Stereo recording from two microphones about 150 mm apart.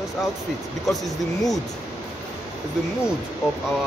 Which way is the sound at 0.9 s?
Centre (ahead or behind).